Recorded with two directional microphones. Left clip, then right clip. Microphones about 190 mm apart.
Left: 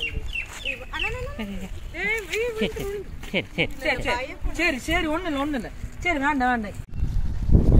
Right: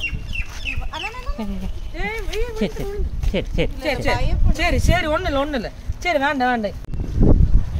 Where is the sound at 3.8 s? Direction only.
60° right (ahead or behind).